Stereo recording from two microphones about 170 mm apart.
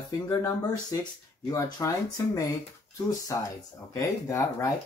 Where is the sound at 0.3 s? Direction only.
20° left (ahead or behind).